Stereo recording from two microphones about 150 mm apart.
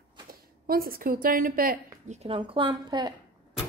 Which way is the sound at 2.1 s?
40° right (ahead or behind).